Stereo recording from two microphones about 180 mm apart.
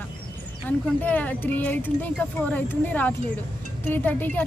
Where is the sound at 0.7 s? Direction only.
10° left (ahead or behind).